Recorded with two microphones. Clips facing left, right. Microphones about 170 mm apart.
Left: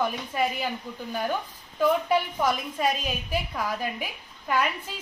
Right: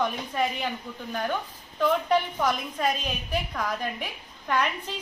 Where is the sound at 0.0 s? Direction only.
5° left (ahead or behind).